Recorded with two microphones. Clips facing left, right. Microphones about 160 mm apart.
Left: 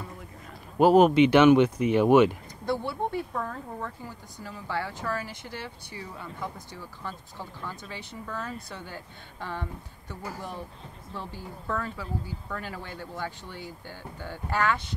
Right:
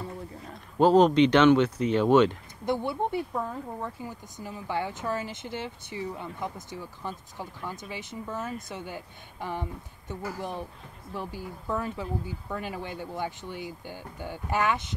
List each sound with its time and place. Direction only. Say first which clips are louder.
0.7 s speech: left 1 dB; 10° left (ahead or behind)
2.6 s speech: right 1 dB; 20° right (ahead or behind)